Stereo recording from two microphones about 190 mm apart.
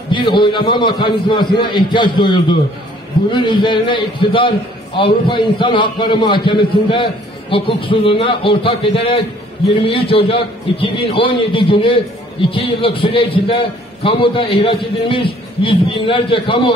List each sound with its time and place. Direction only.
0.1 s a man's voice: 25° left (ahead or behind)